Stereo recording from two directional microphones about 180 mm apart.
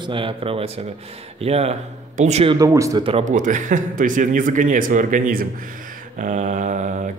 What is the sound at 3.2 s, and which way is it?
Speech, 45° right (ahead or behind).